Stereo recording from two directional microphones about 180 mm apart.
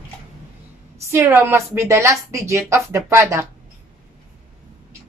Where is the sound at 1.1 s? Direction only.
15° right (ahead or behind).